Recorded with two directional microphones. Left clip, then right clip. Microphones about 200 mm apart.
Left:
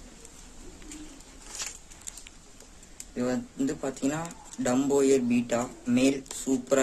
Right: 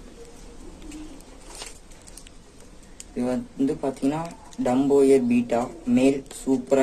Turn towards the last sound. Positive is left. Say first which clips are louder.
# right 5 dB
turn(degrees=35)  # may be behind; listen again after turning